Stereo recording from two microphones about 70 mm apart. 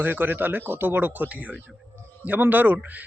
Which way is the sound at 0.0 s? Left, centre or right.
Right.